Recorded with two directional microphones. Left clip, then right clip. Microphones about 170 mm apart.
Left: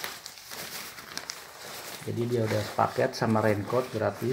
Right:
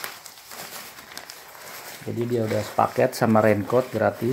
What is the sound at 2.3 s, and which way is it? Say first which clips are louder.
Speech: right 5 dB; 45° right (ahead or behind).